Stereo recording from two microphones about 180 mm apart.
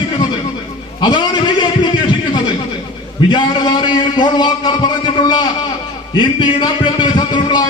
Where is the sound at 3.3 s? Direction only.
25° left (ahead or behind).